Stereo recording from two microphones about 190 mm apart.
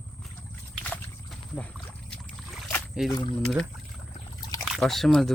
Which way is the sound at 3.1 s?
25° left (ahead or behind).